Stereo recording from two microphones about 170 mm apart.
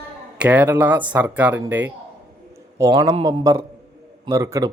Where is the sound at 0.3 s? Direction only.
10° right (ahead or behind).